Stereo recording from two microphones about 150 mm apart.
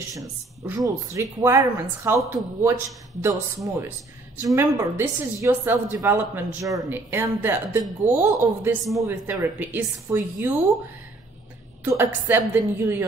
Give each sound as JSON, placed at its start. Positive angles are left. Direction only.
{"t": 0.1, "sound": "speech", "side_deg": -20}
{"t": 11.8, "sound": "speech", "side_deg": -15}